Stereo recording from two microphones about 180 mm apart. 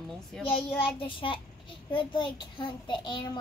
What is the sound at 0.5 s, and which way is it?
A child's voice, 30° left (ahead or behind).